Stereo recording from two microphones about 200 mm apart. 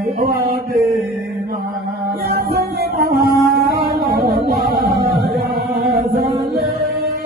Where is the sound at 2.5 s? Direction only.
50° right (ahead or behind).